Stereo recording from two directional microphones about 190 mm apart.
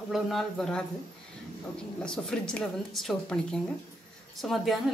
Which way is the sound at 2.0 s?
5° left (ahead or behind).